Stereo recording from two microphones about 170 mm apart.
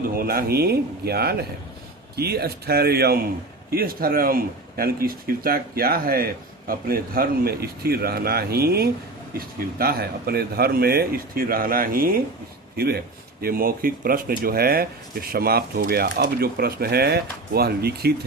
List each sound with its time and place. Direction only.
0.2 s speech: 60° right (ahead or behind)